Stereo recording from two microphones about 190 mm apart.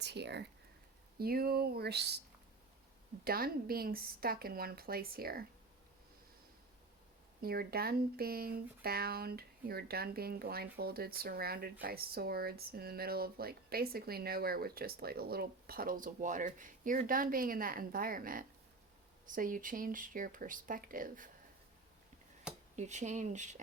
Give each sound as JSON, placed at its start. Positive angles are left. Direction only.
{"t": 0.0, "sound": "speech", "side_deg": -60}
{"t": 3.2, "sound": "speech", "side_deg": -50}
{"t": 7.4, "sound": "speech", "side_deg": -55}
{"t": 22.7, "sound": "speech", "side_deg": -40}